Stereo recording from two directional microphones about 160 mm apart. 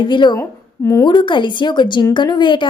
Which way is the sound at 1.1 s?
30° left (ahead or behind).